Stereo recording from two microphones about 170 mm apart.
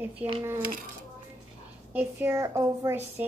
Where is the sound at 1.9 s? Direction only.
10° right (ahead or behind).